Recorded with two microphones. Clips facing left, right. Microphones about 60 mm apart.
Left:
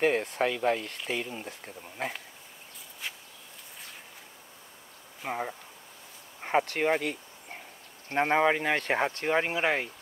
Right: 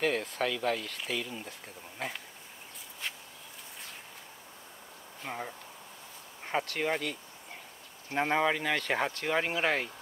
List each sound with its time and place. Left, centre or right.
0.0 s speech: left
5.2 s speech: centre